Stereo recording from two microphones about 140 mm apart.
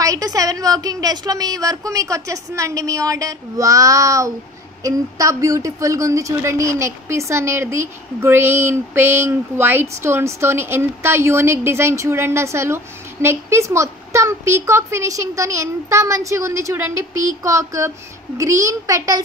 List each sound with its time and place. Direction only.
0.0 s a woman's voice: 25° right (ahead or behind)